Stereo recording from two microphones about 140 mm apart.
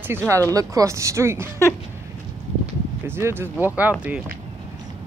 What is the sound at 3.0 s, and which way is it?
Speech, 15° right (ahead or behind).